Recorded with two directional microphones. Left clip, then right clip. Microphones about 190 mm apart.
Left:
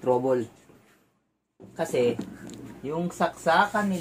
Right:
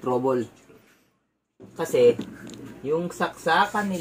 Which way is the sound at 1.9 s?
35° left (ahead or behind).